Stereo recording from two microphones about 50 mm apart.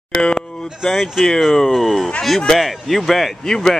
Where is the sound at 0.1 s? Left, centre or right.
Centre.